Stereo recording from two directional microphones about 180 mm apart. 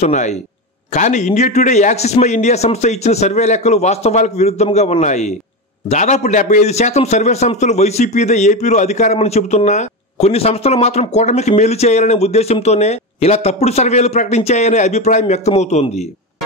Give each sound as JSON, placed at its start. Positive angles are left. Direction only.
{"t": 0.0, "sound": "a man's voice", "side_deg": 40}